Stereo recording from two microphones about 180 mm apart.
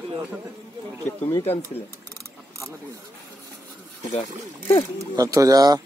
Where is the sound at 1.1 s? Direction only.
10° left (ahead or behind).